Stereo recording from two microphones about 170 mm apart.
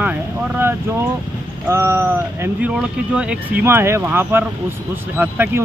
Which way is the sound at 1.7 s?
15° right (ahead or behind).